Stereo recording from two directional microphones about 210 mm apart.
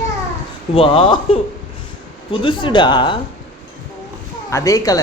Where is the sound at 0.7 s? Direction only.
25° left (ahead or behind).